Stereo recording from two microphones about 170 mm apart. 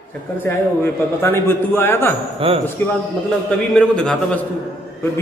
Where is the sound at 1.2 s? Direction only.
15° left (ahead or behind).